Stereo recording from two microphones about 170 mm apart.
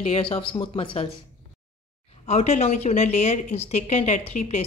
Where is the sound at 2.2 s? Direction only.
40° left (ahead or behind).